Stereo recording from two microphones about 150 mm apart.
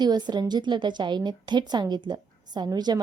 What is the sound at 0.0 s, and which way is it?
A woman's voice, 30° right (ahead or behind).